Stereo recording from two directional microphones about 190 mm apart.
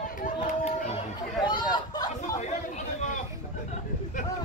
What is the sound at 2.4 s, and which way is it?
Chatter, 35° left (ahead or behind).